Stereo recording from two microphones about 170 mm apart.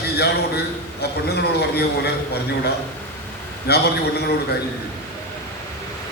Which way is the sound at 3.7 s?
70° left (ahead or behind).